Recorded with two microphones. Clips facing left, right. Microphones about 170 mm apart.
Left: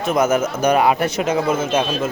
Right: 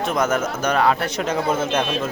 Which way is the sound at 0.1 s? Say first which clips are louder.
Left 6 dB; 5° left (ahead or behind).